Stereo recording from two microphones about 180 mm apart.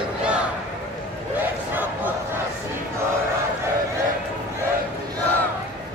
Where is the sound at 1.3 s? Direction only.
10° right (ahead or behind).